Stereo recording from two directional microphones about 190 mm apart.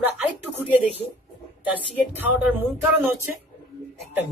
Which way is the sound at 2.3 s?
10° right (ahead or behind).